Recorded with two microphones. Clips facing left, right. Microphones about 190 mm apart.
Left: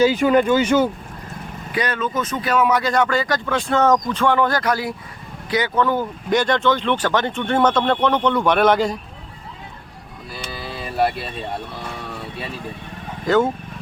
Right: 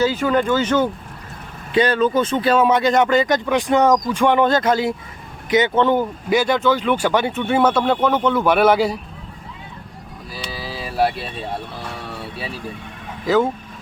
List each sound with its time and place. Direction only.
0.0 s speech: 15° left (ahead or behind)
1.7 s speech: 30° right (ahead or behind)
6.3 s speech: 5° right (ahead or behind)
10.5 s vehicle: 5° right (ahead or behind)
13.2 s speech: centre (ahead or behind)